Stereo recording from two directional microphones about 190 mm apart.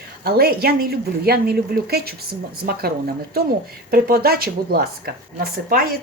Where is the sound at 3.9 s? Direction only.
55° right (ahead or behind).